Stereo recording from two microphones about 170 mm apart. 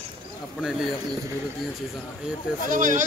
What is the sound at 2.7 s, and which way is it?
Speech, 50° right (ahead or behind).